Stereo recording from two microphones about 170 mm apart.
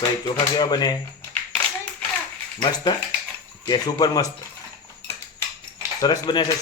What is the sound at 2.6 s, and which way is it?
Speech, 25° left (ahead or behind).